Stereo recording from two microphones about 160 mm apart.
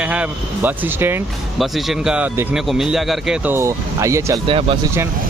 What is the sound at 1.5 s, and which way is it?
Speech, centre (ahead or behind).